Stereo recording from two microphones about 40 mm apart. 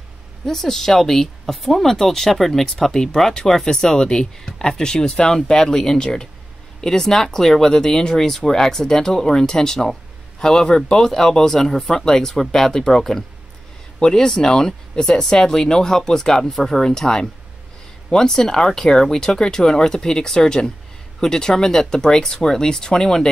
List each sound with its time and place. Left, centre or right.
0.5 s speech: centre